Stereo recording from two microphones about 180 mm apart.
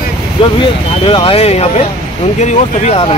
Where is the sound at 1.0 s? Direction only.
30° left (ahead or behind).